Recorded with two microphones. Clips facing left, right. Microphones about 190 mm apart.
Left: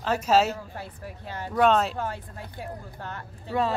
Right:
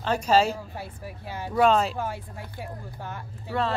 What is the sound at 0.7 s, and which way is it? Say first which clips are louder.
Speech: right 1 dB; 10° right (ahead or behind).